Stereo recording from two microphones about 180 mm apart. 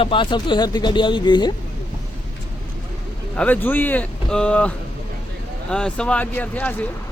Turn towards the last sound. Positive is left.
turn(degrees=10)  # may be behind; listen again after turning